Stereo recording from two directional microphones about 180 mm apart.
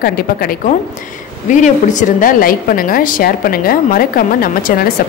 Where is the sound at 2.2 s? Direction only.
50° left (ahead or behind).